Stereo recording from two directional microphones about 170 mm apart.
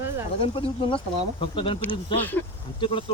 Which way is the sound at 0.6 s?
30° left (ahead or behind).